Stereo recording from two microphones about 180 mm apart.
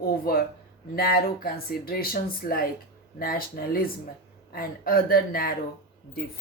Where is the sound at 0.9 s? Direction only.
55° left (ahead or behind).